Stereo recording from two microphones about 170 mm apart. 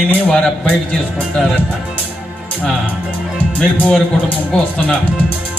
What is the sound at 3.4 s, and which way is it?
Speech, 10° left (ahead or behind).